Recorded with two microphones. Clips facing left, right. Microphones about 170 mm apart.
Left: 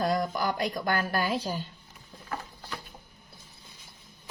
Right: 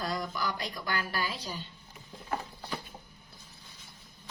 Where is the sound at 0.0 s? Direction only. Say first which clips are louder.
Left 6 dB; 55° left (ahead or behind).